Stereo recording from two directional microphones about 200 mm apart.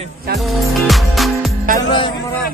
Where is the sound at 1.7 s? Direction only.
20° left (ahead or behind).